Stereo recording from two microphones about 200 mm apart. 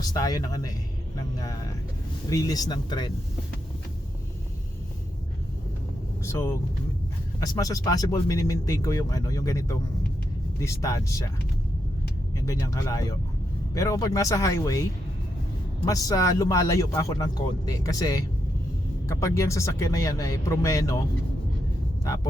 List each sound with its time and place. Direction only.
0.0 s speech: 20° left (ahead or behind)
2.3 s speech: 20° left (ahead or behind)
6.2 s speech: 15° left (ahead or behind)
12.5 s speech: 15° left (ahead or behind)
15.9 s speech: 15° left (ahead or behind)
22.0 s speech: 15° left (ahead or behind)